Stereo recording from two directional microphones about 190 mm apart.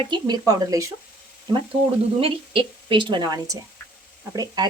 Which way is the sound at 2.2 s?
30° right (ahead or behind).